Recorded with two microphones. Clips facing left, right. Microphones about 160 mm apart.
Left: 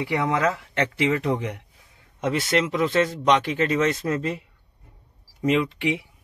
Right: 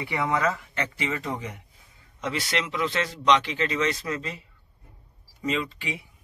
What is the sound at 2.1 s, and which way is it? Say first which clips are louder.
Speech: left 6 dB; 50° left (ahead or behind).